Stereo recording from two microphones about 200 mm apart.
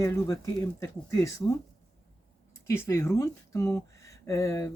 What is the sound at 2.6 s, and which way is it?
Speech, 15° left (ahead or behind).